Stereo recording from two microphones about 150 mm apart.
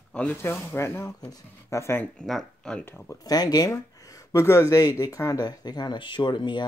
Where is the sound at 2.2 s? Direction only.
Centre (ahead or behind).